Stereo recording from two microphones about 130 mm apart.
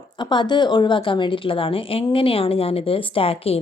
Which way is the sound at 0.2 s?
35° left (ahead or behind).